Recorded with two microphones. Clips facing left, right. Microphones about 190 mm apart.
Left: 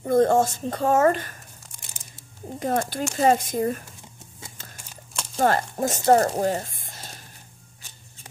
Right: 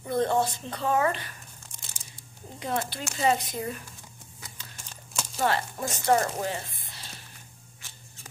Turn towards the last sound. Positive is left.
turn(degrees=45)  # may be behind; listen again after turning